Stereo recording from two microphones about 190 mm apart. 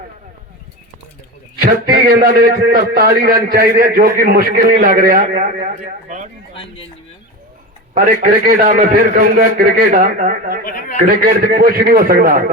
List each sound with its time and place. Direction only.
1.5 s a man's voice: 50° right (ahead or behind)
6.5 s speech: 30° left (ahead or behind)
7.9 s a man's voice: 45° right (ahead or behind)